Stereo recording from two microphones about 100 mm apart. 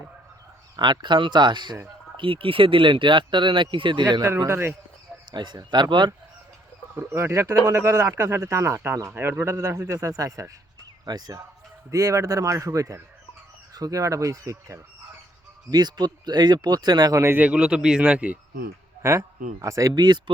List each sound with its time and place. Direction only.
0.8 s speech: 50° right (ahead or behind)
4.4 s speech: 25° right (ahead or behind)
5.3 s speech: 45° right (ahead or behind)
7.1 s speech: 25° right (ahead or behind)
15.7 s speech: 45° right (ahead or behind)
17.3 s speech: 15° right (ahead or behind)
19.6 s speech: 30° right (ahead or behind)
20.0 s speech: 45° right (ahead or behind)